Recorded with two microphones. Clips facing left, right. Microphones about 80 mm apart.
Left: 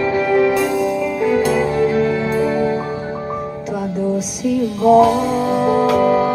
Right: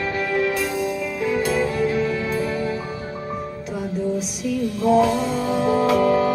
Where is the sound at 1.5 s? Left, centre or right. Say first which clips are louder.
Left 5 dB; left.